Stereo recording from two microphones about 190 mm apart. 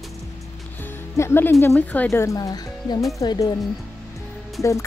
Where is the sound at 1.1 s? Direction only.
15° left (ahead or behind).